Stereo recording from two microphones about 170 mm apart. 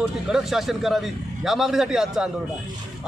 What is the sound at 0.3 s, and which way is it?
A man's voice, centre (ahead or behind).